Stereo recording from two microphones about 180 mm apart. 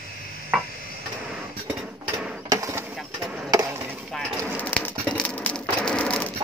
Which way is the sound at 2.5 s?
15° right (ahead or behind).